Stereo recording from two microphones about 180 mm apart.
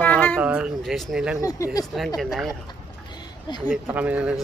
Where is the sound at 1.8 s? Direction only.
Centre (ahead or behind).